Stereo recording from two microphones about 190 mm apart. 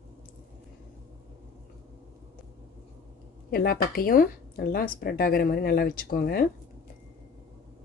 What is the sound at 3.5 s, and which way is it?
Speech, 50° left (ahead or behind).